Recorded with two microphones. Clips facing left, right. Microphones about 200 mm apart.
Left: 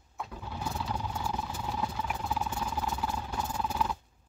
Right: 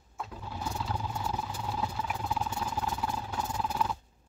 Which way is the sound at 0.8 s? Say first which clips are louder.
Even; centre (ahead or behind).